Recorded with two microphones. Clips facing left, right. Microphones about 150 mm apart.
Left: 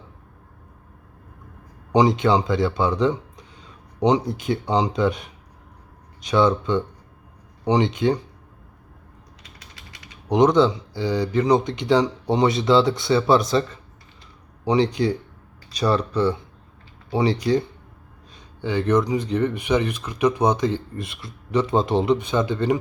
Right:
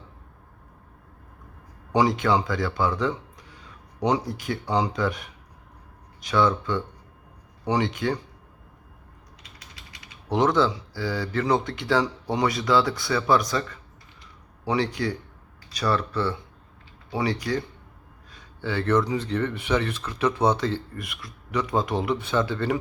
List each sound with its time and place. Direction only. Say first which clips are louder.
1.9 s speech: left 4 dB; 20° left (ahead or behind)
10.2 s speech: left 5 dB; 15° left (ahead or behind)